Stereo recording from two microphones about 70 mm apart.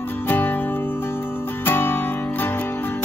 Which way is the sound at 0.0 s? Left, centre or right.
Left.